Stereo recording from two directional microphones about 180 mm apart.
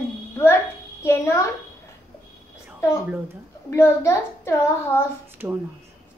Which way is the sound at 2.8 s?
15° left (ahead or behind).